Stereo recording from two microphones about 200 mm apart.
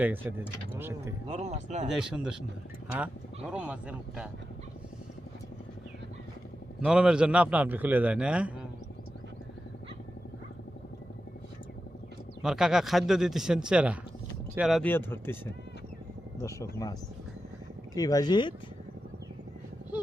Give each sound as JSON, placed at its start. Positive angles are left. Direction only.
{"t": 0.0, "sound": "speech", "side_deg": -10}
{"t": 1.3, "sound": "speech", "side_deg": -35}
{"t": 1.9, "sound": "a man's voice", "side_deg": -5}
{"t": 3.5, "sound": "a man's voice", "side_deg": -5}
{"t": 6.7, "sound": "a man's voice", "side_deg": -5}
{"t": 12.4, "sound": "a man's voice", "side_deg": -5}
{"t": 17.9, "sound": "speech", "side_deg": 20}